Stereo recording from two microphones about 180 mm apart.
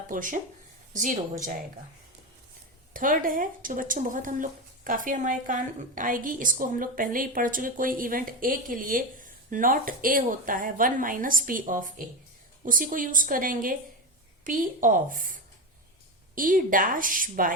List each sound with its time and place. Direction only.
0.1 s speech: 50° right (ahead or behind)
2.9 s speech: 50° right (ahead or behind)